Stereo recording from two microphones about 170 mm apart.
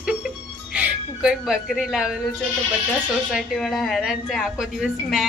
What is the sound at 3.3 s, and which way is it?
A woman's voice, centre (ahead or behind).